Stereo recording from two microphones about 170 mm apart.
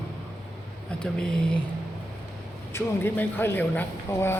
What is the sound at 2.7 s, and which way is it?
A man's voice, 10° left (ahead or behind).